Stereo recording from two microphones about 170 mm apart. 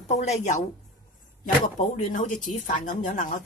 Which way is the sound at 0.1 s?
40° left (ahead or behind).